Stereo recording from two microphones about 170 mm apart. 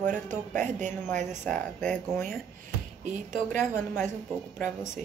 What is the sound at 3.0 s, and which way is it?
Speech, 45° right (ahead or behind).